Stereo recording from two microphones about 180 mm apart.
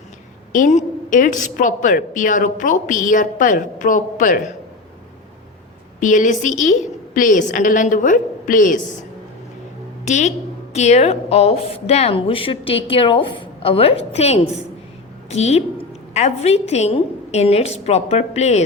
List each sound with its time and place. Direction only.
0.5 s a woman's voice: 45° left (ahead or behind)
6.0 s a woman's voice: 45° left (ahead or behind)
10.1 s a woman's voice: 40° left (ahead or behind)